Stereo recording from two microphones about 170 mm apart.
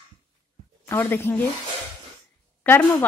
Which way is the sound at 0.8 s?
15° left (ahead or behind).